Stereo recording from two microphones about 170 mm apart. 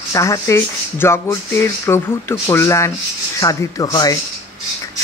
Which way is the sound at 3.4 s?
20° left (ahead or behind).